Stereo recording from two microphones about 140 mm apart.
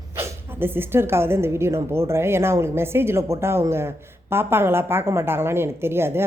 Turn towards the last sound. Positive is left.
turn(degrees=-15)  # may be behind; listen again after turning